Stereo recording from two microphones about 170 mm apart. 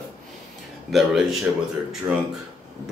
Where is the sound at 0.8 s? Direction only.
Centre (ahead or behind).